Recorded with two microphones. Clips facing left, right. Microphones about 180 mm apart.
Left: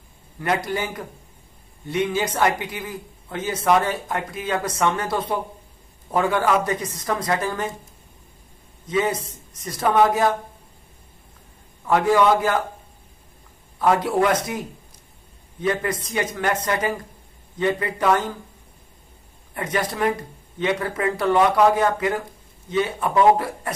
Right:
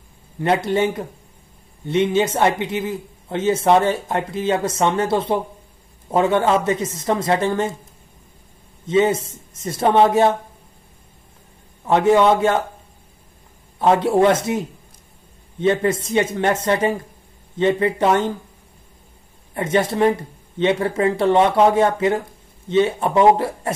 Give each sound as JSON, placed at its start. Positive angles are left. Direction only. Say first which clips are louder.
{"t": 0.4, "sound": "speech", "louder": "right 6 dB", "side_deg": -25}
{"t": 8.8, "sound": "speech", "louder": "right 6 dB", "side_deg": -25}
{"t": 11.8, "sound": "speech", "louder": "right 3 dB", "side_deg": -25}
{"t": 13.7, "sound": "speech", "louder": "right 4 dB", "side_deg": -25}
{"t": 15.6, "sound": "speech", "louder": "right 6 dB", "side_deg": -25}
{"t": 19.5, "sound": "speech", "louder": "right 6 dB", "side_deg": -25}